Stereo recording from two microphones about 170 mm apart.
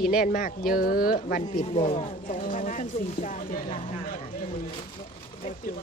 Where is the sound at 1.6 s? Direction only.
35° left (ahead or behind).